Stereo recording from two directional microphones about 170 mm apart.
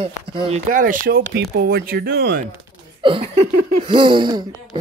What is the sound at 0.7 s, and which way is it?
Speech, 50° right (ahead or behind).